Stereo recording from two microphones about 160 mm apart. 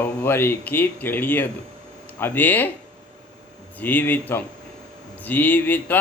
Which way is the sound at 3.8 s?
10° left (ahead or behind).